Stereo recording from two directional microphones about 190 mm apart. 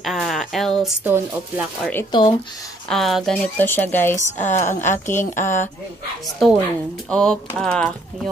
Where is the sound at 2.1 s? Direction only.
25° left (ahead or behind).